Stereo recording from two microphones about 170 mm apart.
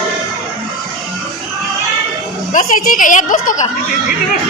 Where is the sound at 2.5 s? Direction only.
50° left (ahead or behind).